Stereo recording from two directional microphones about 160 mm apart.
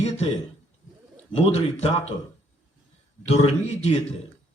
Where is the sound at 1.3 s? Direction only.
45° left (ahead or behind).